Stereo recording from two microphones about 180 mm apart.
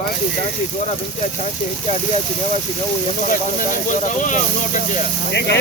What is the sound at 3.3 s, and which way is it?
Speech, 45° left (ahead or behind).